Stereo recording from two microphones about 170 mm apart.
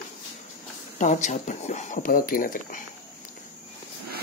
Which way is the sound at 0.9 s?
45° left (ahead or behind).